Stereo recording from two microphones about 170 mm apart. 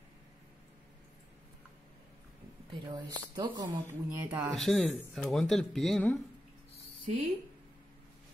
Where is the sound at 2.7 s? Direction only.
25° right (ahead or behind).